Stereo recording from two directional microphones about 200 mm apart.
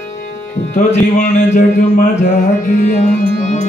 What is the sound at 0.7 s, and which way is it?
Speech, 35° left (ahead or behind).